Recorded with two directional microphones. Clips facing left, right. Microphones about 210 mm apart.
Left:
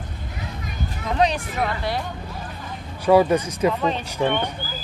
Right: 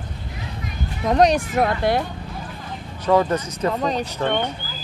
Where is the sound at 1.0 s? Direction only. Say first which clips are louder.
Right 5 dB; 45° right (ahead or behind).